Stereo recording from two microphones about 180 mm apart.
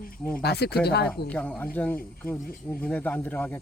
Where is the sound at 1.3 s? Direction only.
5° left (ahead or behind).